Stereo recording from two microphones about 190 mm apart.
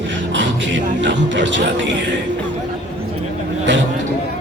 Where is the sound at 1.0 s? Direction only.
70° right (ahead or behind).